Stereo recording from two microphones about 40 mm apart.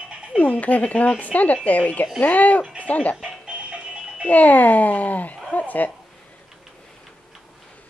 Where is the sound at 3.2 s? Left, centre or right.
Right.